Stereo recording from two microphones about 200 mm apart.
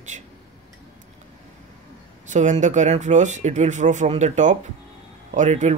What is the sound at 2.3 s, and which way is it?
Speech, 40° right (ahead or behind).